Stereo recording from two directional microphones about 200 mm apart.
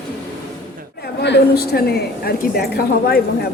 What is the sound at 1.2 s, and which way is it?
A woman's voice, 55° left (ahead or behind).